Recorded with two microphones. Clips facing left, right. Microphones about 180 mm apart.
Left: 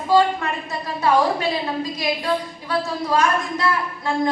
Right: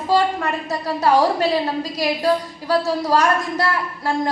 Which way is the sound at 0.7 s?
40° right (ahead or behind).